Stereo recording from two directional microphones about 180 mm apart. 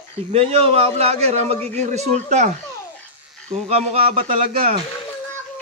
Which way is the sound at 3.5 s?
35° right (ahead or behind).